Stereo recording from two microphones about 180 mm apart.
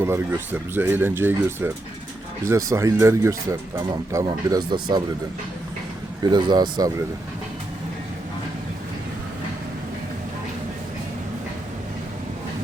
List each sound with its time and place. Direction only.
0.0 s speech: 15° right (ahead or behind)
6.3 s speech: 25° right (ahead or behind)